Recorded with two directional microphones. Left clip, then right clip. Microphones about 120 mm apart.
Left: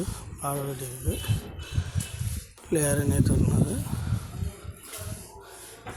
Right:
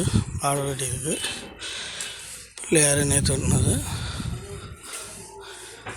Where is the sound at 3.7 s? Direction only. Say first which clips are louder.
Right 5 dB; 15° right (ahead or behind).